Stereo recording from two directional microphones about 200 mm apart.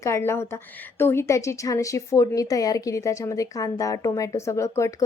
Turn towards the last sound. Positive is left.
turn(degrees=15)  # may be behind; listen again after turning